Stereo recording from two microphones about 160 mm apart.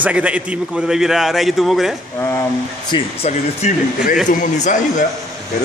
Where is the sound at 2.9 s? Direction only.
30° left (ahead or behind).